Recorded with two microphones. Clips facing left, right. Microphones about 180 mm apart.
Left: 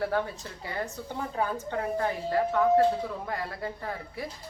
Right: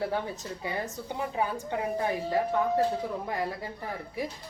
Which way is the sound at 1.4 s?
10° right (ahead or behind).